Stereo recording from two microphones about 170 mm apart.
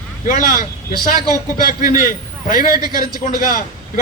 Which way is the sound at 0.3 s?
55° left (ahead or behind).